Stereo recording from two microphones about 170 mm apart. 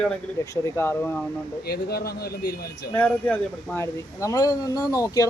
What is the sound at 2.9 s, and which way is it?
Speech, 10° left (ahead or behind).